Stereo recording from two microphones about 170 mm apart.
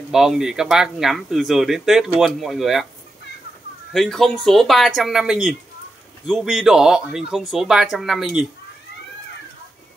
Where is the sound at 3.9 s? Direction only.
Centre (ahead or behind).